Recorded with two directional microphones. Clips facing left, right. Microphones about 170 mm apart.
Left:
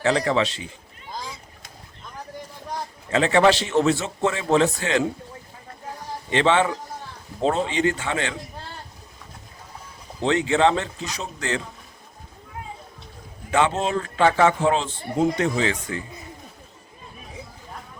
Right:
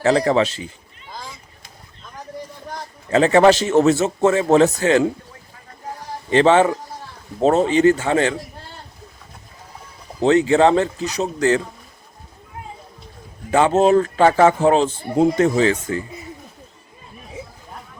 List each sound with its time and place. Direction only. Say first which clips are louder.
0.0 s speech: right 5 dB; 35° right (ahead or behind)
3.1 s speech: right 5 dB; 40° right (ahead or behind)
6.3 s speech: right 6 dB; 40° right (ahead or behind)
10.2 s speech: right 6 dB; 40° right (ahead or behind)
13.5 s speech: right 7 dB; 40° right (ahead or behind)